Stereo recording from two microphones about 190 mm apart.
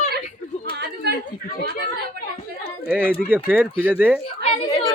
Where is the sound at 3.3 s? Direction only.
10° right (ahead or behind).